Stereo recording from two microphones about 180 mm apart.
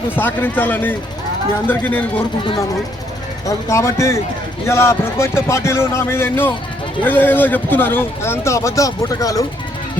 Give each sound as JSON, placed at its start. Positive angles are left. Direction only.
{"t": 0.2, "sound": "a man's voice", "side_deg": 10}
{"t": 3.4, "sound": "a man's voice", "side_deg": 15}